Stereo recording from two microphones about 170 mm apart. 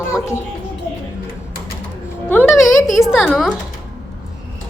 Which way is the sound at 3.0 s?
Centre (ahead or behind).